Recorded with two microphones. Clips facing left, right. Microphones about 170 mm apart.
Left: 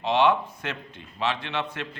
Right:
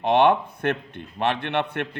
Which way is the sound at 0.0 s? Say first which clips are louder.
Right 3 dB; 55° right (ahead or behind).